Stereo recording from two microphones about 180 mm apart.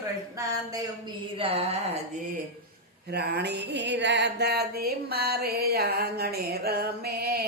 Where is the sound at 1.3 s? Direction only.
30° right (ahead or behind).